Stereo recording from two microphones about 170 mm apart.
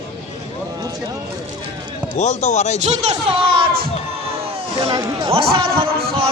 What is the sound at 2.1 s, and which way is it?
Speech, 45° left (ahead or behind).